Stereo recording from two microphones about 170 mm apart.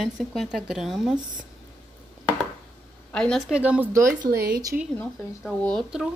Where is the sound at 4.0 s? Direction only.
55° right (ahead or behind).